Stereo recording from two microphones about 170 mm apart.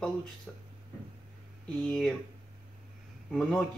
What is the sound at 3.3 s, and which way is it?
Speech, 5° left (ahead or behind).